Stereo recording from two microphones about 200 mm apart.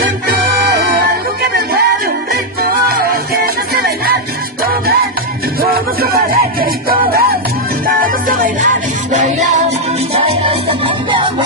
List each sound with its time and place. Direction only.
5.6 s music: 50° right (ahead or behind)
10.7 s music: 25° right (ahead or behind)